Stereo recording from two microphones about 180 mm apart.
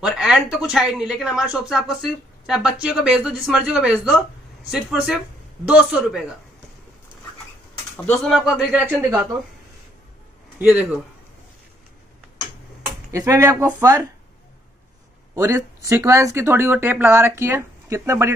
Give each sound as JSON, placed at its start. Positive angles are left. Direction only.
{"t": 0.0, "sound": "a woman's voice", "side_deg": -5}
{"t": 8.0, "sound": "a woman's voice", "side_deg": 5}
{"t": 10.6, "sound": "speech", "side_deg": -10}
{"t": 13.1, "sound": "speech", "side_deg": -15}
{"t": 15.3, "sound": "speech", "side_deg": -15}